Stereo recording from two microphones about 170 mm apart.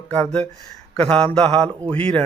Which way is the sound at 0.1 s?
5° left (ahead or behind).